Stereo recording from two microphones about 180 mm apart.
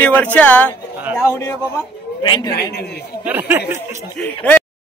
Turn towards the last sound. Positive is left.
turn(degrees=5)  # may be behind; listen again after turning